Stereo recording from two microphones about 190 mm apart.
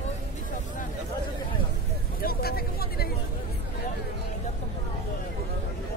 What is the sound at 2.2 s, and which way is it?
Vehicle, 50° left (ahead or behind).